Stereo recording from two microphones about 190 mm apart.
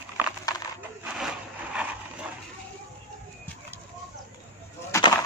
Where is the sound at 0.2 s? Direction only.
10° right (ahead or behind).